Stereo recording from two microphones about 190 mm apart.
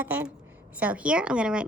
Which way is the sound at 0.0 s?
10° right (ahead or behind).